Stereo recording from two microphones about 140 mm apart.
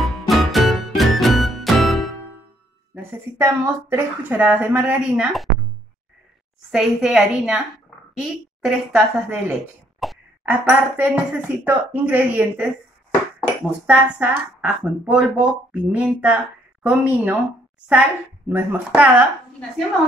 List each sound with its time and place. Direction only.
0.0 s music: centre (ahead or behind)
2.9 s speech: 20° right (ahead or behind); by 5.5 s 5° right (ahead or behind)
6.7 s a woman's voice: 5° right (ahead or behind)
10.0 s throat clearing: centre (ahead or behind)
10.4 s speech: 10° right (ahead or behind)
18.5 s speech: 15° right (ahead or behind)